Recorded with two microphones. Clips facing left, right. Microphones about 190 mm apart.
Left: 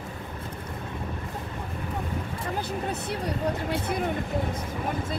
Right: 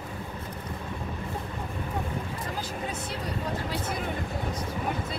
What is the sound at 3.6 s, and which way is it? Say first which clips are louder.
Speech: left 4 dB; 60° left (ahead or behind).